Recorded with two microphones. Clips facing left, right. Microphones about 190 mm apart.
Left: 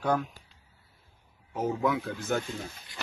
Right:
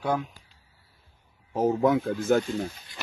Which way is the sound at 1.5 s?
40° right (ahead or behind).